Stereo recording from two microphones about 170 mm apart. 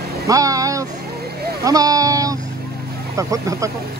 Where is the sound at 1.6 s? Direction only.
20° right (ahead or behind).